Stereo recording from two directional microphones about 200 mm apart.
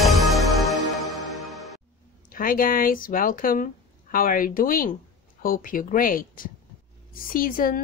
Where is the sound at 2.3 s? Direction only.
45° left (ahead or behind).